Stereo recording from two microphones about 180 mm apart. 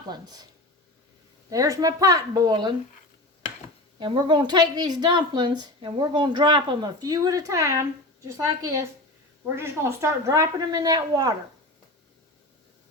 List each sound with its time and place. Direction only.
0.1 s a woman's voice: 20° right (ahead or behind)
1.5 s a woman's voice: 20° right (ahead or behind)
4.0 s a woman's voice: 25° right (ahead or behind)